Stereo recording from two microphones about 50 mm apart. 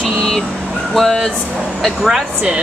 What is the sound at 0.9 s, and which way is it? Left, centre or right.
Speech, centre.